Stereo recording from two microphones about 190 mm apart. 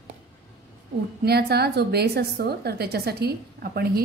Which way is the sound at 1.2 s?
55° right (ahead or behind).